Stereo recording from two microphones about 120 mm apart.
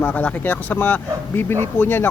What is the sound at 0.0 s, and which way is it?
Speech, 10° left (ahead or behind).